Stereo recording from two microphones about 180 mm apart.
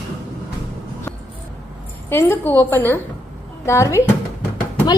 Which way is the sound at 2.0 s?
10° left (ahead or behind).